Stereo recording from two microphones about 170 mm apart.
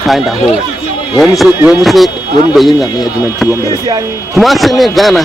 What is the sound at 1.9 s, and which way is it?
Speech, centre (ahead or behind).